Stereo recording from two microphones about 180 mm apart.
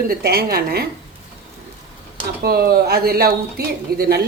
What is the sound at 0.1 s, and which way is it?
Speech, 60° right (ahead or behind).